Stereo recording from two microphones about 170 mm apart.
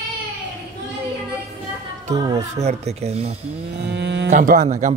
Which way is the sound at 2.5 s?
40° right (ahead or behind).